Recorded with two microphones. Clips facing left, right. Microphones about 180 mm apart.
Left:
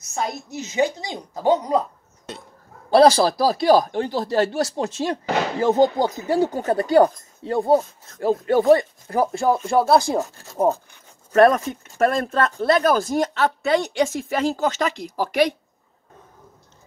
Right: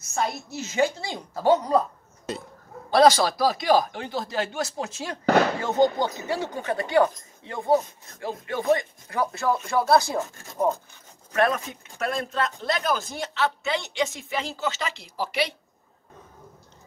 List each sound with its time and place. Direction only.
0.1 s a woman's voice: 15° left (ahead or behind)
2.3 s a sound: centre (ahead or behind)
2.9 s speech: 30° left (ahead or behind)
11.3 s speech: 45° left (ahead or behind)